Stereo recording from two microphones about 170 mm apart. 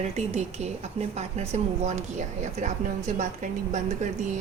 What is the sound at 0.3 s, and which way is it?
A woman's voice, 40° right (ahead or behind).